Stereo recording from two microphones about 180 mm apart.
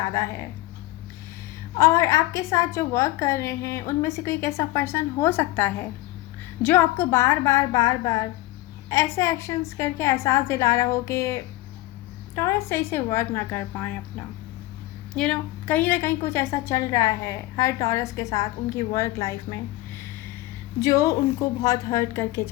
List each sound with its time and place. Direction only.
0.0 s a woman's voice: 15° left (ahead or behind)
1.8 s a woman's voice: 15° left (ahead or behind)
15.1 s a woman's voice: 5° left (ahead or behind)
20.8 s a woman's voice: 20° left (ahead or behind)